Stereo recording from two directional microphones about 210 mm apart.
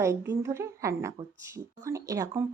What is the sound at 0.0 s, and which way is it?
Speech, 15° right (ahead or behind).